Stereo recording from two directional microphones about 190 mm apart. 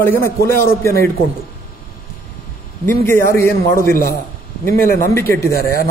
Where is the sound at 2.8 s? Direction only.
10° left (ahead or behind).